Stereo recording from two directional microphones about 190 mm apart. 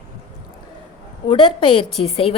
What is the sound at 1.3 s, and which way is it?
A woman's voice, 25° left (ahead or behind).